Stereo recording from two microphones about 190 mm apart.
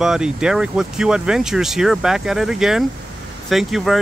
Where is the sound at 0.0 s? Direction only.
5° right (ahead or behind).